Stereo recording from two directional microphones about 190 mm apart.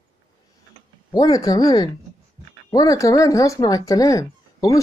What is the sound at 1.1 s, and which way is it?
Speech, 20° left (ahead or behind).